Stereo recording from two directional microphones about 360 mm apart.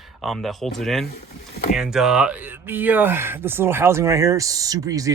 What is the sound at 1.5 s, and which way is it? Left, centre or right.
Speech, left.